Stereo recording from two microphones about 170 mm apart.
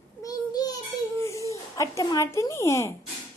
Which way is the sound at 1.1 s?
15° left (ahead or behind).